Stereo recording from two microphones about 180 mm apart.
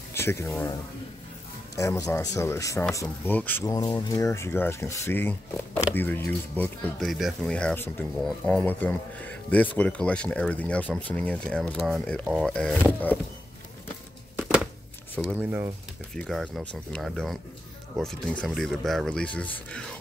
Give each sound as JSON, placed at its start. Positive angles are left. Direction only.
{"t": 0.1, "sound": "speech", "side_deg": 15}
{"t": 1.8, "sound": "speech", "side_deg": 15}
{"t": 7.1, "sound": "speech", "side_deg": 0}
{"t": 14.3, "sound": "a sound", "side_deg": -5}
{"t": 15.3, "sound": "speech", "side_deg": -15}
{"t": 16.2, "sound": "speech", "side_deg": 0}